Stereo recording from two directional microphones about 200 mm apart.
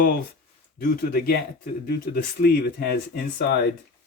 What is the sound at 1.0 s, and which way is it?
Speech, 50° left (ahead or behind).